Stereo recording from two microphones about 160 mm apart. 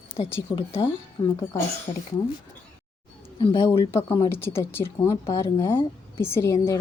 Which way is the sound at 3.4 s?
30° left (ahead or behind).